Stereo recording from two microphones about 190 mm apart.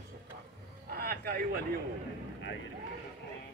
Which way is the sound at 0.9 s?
55° right (ahead or behind).